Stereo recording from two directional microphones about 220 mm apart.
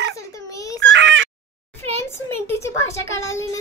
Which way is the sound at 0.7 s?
55° right (ahead or behind).